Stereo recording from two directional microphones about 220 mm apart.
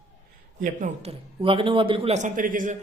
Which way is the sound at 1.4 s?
25° right (ahead or behind).